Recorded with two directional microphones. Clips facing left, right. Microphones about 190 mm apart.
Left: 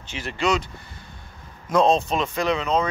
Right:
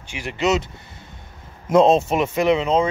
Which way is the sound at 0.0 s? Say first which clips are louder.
Right 3 dB; 15° right (ahead or behind).